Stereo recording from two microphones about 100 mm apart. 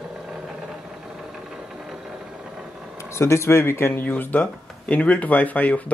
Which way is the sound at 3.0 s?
30° left (ahead or behind).